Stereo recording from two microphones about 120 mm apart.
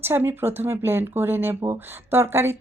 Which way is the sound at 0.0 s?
20° right (ahead or behind).